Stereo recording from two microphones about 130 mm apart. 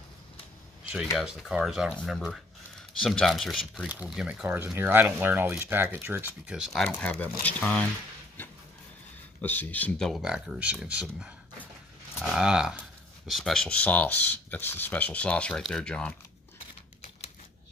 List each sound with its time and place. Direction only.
1.1 s speech: 5° right (ahead or behind)
6.4 s speech: 5° right (ahead or behind)
6.8 s speech: 10° left (ahead or behind)
8.4 s vehicle: 15° left (ahead or behind)
9.4 s speech: 15° left (ahead or behind)